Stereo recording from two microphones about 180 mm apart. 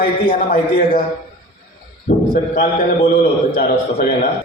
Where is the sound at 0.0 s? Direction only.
50° left (ahead or behind).